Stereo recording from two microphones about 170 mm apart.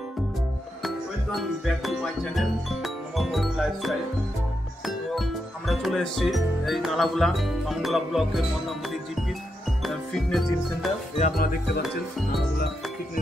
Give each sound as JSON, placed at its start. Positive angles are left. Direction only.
{"t": 0.8, "sound": "speech", "side_deg": 0}
{"t": 9.8, "sound": "music", "side_deg": 0}
{"t": 11.3, "sound": "music", "side_deg": 60}